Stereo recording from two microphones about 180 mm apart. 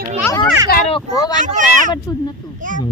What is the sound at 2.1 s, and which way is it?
Speech, 20° left (ahead or behind).